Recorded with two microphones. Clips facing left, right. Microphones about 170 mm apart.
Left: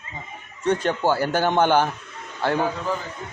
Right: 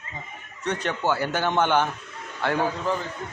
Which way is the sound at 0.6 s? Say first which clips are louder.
Left 5 dB; 30° left (ahead or behind).